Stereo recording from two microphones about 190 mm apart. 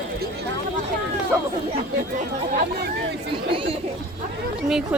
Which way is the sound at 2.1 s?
50° right (ahead or behind).